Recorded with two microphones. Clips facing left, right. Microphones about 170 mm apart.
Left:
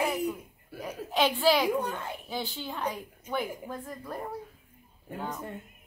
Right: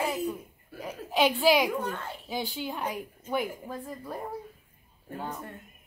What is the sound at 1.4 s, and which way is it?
Speech, 10° right (ahead or behind).